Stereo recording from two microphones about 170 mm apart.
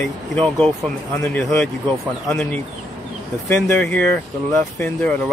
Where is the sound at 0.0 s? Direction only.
5° left (ahead or behind).